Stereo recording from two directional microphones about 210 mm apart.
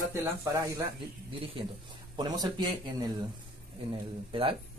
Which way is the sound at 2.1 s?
20° right (ahead or behind).